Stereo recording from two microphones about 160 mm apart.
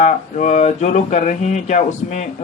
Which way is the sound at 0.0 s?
50° left (ahead or behind).